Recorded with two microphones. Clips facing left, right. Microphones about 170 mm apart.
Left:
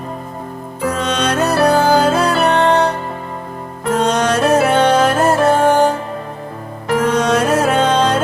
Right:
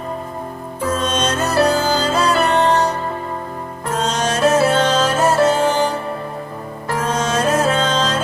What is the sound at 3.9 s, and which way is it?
Music, 60° left (ahead or behind).